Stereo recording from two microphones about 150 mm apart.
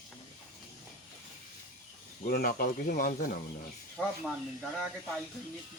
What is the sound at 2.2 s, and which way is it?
Speech, 85° left.